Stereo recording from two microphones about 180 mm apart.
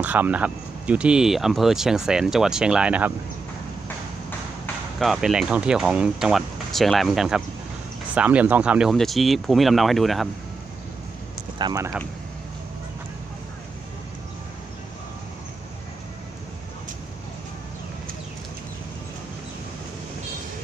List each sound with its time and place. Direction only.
0.0 s speech: 10° right (ahead or behind)
4.9 s speech: centre (ahead or behind)
11.5 s speech: 20° right (ahead or behind)